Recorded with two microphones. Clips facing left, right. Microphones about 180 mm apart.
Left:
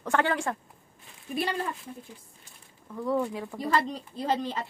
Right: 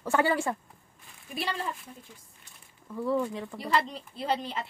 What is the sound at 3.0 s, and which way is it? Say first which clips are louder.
Speech: left 1 dB; 5° left (ahead or behind).